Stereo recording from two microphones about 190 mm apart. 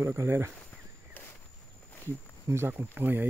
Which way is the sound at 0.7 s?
10° left (ahead or behind).